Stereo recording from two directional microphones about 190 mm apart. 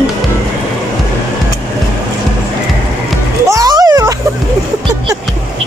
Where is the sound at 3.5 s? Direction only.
20° right (ahead or behind).